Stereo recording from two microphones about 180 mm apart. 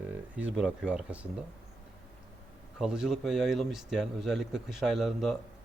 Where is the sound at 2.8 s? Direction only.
5° right (ahead or behind).